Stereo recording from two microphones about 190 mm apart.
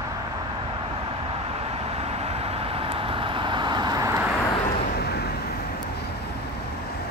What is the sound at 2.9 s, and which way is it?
Vehicle, 30° right (ahead or behind).